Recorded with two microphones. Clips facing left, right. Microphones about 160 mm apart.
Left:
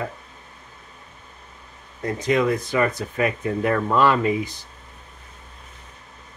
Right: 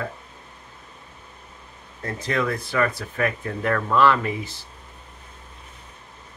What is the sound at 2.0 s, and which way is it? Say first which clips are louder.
Speech: left 5 dB; 15° left (ahead or behind).